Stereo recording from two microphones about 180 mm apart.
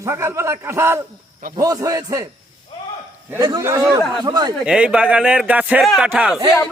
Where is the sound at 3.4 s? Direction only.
20° right (ahead or behind).